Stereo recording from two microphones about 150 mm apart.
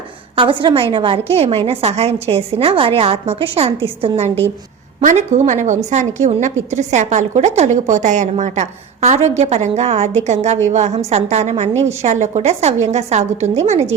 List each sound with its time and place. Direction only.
0.3 s a woman's voice: 35° right (ahead or behind)
5.0 s a woman's voice: 50° right (ahead or behind)